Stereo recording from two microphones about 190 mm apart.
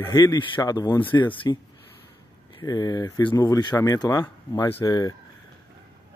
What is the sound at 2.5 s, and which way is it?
Speech, 20° left (ahead or behind).